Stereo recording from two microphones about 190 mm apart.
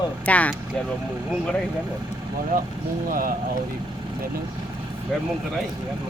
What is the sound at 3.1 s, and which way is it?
Speech, 45° right (ahead or behind).